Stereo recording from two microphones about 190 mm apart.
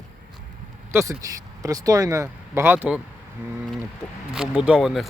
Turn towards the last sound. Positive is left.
turn(degrees=0)  # may be behind; listen again after turning